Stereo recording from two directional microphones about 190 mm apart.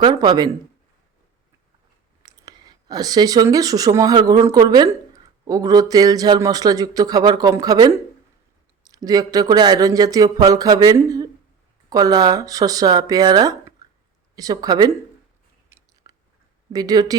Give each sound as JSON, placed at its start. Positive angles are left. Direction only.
{"t": 0.0, "sound": "a man's voice", "side_deg": -20}
{"t": 2.2, "sound": "a man's voice", "side_deg": -20}
{"t": 15.7, "sound": "biting", "side_deg": -15}
{"t": 16.7, "sound": "a man's voice", "side_deg": -20}